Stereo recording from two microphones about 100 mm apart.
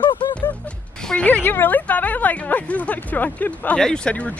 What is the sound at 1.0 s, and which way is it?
A woman's voice, 15° left (ahead or behind).